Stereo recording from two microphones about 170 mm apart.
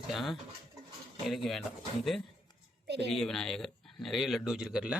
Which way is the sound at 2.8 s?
80° right.